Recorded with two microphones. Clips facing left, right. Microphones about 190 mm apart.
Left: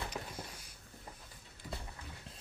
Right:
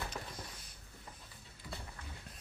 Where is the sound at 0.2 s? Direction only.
20° left (ahead or behind).